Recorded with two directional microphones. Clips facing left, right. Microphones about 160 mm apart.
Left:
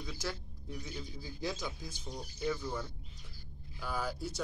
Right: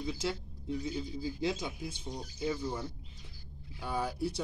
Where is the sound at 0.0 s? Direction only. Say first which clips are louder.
Right 5 dB; 25° right (ahead or behind).